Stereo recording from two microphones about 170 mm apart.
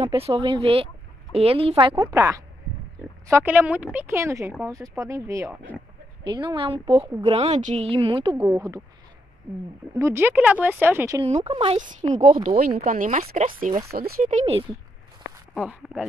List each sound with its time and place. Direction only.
0.0 s speech: 35° right (ahead or behind)
3.3 s a woman's voice: 15° right (ahead or behind)
6.2 s speech: 25° right (ahead or behind)
7.0 s a woman's voice: 15° right (ahead or behind)
7.2 s speech: 40° right (ahead or behind)
8.5 s speech: 20° right (ahead or behind)
9.9 s a woman's voice: 15° right (ahead or behind)
11.2 s speech: 40° right (ahead or behind)
11.8 s speech: 45° right (ahead or behind)
12.5 s speech: 55° right (ahead or behind); by 14.6 s 40° right (ahead or behind)
15.5 s speech: 5° right (ahead or behind)